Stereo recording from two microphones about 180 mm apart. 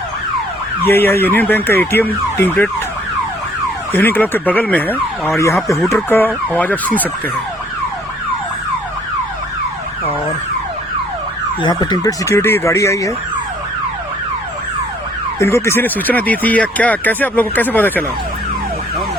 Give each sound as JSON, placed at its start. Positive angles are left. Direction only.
{"t": 0.9, "sound": "speech", "side_deg": 10}
{"t": 3.9, "sound": "speech", "side_deg": 10}
{"t": 11.6, "sound": "speech", "side_deg": 20}
{"t": 15.4, "sound": "speech", "side_deg": 15}